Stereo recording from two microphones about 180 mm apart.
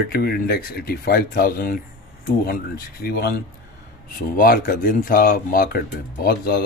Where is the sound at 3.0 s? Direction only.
60° left (ahead or behind).